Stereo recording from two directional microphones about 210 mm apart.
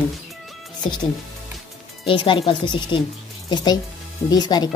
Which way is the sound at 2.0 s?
25° left (ahead or behind).